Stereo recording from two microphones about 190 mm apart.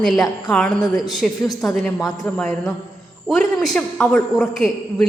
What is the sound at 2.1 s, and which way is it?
Speech, 20° left (ahead or behind).